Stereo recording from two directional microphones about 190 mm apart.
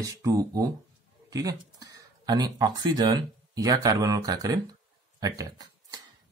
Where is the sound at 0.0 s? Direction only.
20° right (ahead or behind).